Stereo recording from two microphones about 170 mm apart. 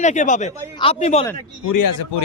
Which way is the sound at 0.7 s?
35° left (ahead or behind).